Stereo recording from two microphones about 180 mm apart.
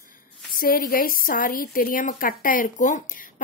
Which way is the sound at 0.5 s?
50° left (ahead or behind).